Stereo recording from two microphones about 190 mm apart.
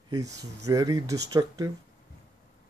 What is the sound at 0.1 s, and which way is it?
Speech, 20° right (ahead or behind).